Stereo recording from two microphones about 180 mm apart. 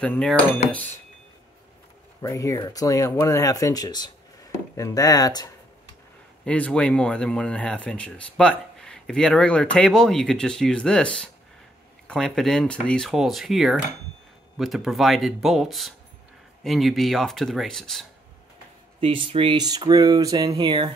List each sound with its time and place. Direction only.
0.0 s speech: 5° left (ahead or behind)
2.2 s speech: 20° left (ahead or behind)
6.4 s speech: 5° left (ahead or behind)
18.9 s speech: 30° right (ahead or behind)